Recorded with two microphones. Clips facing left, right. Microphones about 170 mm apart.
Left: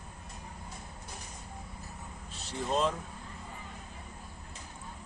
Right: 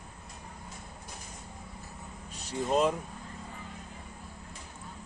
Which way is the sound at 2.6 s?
10° right (ahead or behind).